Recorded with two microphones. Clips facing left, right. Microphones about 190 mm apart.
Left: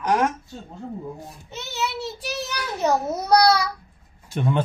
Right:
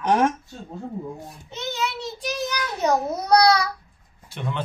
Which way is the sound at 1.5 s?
5° left (ahead or behind).